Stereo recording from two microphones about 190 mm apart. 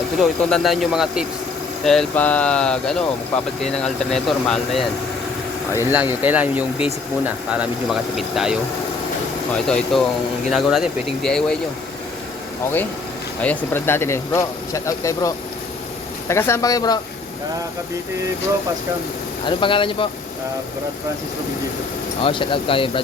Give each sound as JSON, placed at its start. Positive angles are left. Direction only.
{"t": 0.2, "sound": "speech", "side_deg": 0}
{"t": 5.9, "sound": "speech", "side_deg": -10}
{"t": 9.6, "sound": "speech", "side_deg": 5}
{"t": 13.4, "sound": "speech", "side_deg": 10}
{"t": 16.3, "sound": "speech", "side_deg": 15}
{"t": 19.5, "sound": "speech", "side_deg": 25}
{"t": 22.2, "sound": "speech", "side_deg": 25}